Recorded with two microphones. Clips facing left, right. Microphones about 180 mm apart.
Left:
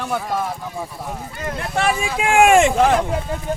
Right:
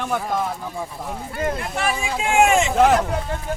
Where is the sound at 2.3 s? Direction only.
55° left (ahead or behind).